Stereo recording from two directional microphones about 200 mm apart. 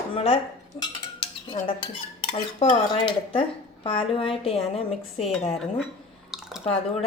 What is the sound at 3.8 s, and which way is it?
Speech, 25° left (ahead or behind).